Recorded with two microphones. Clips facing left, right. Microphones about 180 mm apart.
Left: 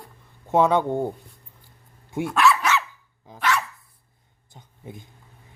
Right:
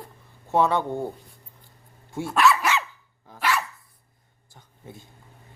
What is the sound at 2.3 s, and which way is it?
Dog, centre (ahead or behind).